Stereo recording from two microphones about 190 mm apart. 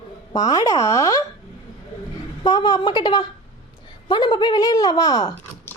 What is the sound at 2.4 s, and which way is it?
A woman's voice, 25° left (ahead or behind).